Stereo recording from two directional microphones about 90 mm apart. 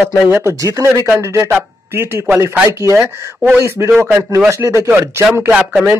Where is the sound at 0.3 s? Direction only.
25° right (ahead or behind).